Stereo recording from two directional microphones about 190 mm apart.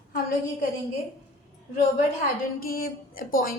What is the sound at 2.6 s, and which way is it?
Speech, 50° left (ahead or behind).